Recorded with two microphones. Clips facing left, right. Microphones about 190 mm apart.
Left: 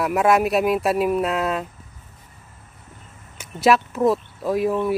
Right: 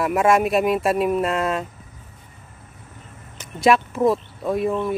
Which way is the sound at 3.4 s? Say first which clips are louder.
Even; 5° left (ahead or behind).